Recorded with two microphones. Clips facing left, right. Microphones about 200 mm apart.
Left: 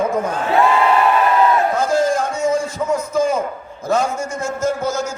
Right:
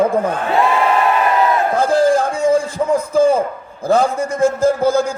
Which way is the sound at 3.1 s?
30° right (ahead or behind).